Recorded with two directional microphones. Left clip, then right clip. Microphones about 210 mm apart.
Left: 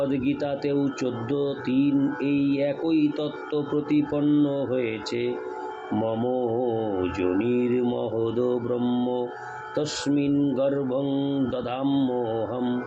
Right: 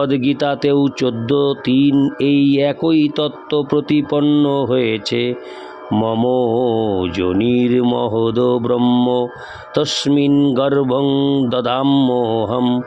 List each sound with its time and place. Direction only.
0.0 s speech: 55° right (ahead or behind)